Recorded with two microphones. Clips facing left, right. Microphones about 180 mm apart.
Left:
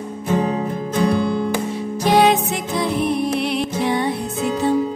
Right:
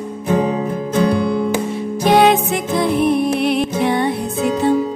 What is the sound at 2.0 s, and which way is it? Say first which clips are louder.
Music: right 3 dB; 60° right (ahead or behind).